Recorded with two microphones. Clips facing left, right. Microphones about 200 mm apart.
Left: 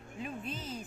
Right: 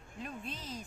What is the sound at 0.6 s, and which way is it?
Music, 30° left (ahead or behind).